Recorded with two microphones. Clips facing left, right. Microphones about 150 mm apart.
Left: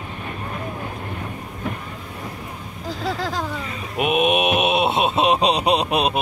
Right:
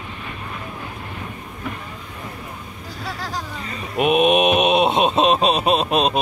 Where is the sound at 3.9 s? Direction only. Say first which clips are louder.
Right 3 dB; 5° left (ahead or behind).